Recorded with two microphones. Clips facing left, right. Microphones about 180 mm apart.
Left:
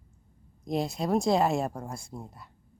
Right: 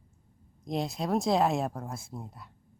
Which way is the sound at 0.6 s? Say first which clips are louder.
Left 2 dB; centre (ahead or behind).